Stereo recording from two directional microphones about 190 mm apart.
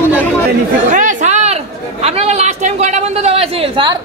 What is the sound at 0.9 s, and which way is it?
Chatter, 40° right (ahead or behind).